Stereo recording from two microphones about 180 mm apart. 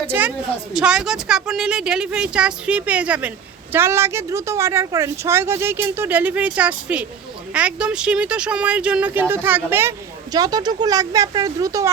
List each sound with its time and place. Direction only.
0.1 s speech: 10° right (ahead or behind)